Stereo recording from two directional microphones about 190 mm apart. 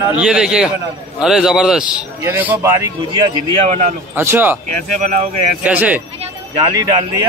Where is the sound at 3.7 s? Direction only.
35° right (ahead or behind).